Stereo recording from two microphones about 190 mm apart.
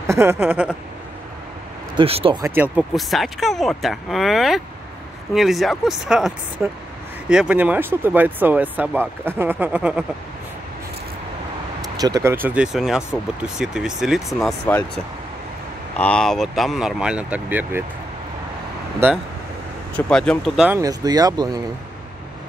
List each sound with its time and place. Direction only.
0.0 s speech: 15° right (ahead or behind)
2.0 s speech: 30° right (ahead or behind)
2.4 s speech: 10° right (ahead or behind)
12.0 s speech: 15° right (ahead or behind)
16.0 s speech: 5° left (ahead or behind)
20.1 s speech: 5° left (ahead or behind)
20.8 s speech: 20° right (ahead or behind)